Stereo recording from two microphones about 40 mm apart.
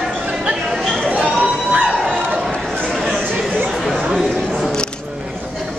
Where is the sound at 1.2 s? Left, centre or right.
Right.